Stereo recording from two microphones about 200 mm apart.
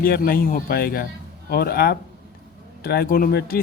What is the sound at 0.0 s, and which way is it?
Speech, 45° left (ahead or behind).